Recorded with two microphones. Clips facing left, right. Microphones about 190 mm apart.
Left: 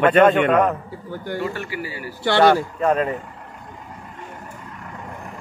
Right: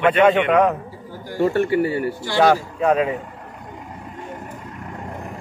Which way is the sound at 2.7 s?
5° right (ahead or behind).